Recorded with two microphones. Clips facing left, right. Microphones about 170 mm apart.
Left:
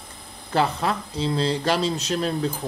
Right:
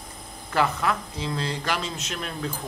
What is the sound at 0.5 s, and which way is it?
Speech, 30° left (ahead or behind).